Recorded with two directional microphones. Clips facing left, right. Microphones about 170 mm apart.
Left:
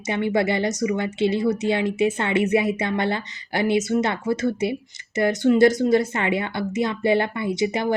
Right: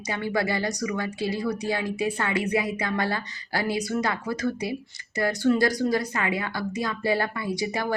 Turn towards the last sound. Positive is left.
turn(degrees=20)  # may be behind; listen again after turning